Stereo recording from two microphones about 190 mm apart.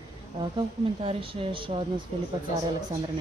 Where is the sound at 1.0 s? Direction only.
30° right (ahead or behind).